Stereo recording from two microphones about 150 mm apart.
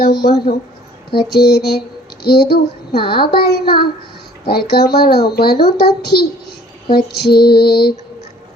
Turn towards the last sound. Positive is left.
turn(degrees=90)